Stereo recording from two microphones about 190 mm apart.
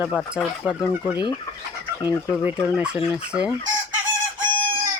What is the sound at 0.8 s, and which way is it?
Speech, 25° left (ahead or behind).